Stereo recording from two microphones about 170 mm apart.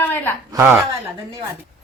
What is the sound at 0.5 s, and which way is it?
Speech, 10° right (ahead or behind).